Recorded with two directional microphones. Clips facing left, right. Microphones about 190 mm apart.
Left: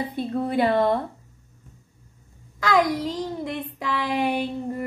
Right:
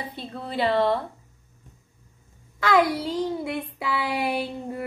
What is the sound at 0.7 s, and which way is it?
Speech, 15° left (ahead or behind).